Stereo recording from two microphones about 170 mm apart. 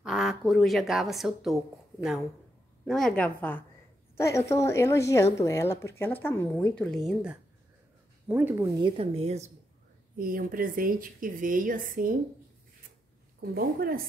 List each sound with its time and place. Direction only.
0.0 s speech: centre (ahead or behind)
2.8 s a woman's voice: 5° left (ahead or behind); by 9.5 s 40° right (ahead or behind)
10.1 s speech: 55° right (ahead or behind)
13.4 s a woman's voice: 60° right (ahead or behind)